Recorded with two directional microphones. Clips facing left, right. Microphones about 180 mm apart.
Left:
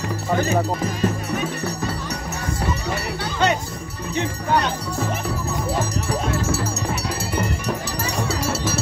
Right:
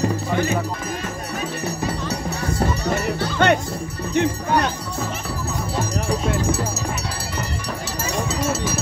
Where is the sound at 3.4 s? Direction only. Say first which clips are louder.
Right 3 dB; 55° right (ahead or behind).